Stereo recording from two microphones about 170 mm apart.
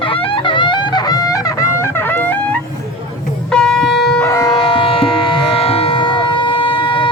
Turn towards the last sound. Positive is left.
turn(degrees=30)  # may be behind; listen again after turning